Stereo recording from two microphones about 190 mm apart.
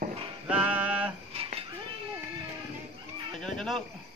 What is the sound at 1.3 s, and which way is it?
Dishes, 30° right (ahead or behind).